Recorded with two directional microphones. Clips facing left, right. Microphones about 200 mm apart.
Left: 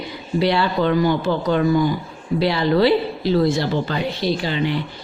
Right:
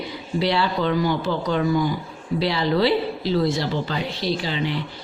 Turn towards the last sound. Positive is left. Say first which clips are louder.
# left 3 dB
turn(degrees=55)  # may be behind; listen again after turning